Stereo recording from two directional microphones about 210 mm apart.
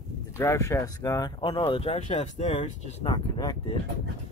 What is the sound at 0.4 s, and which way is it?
Speech, 15° left (ahead or behind).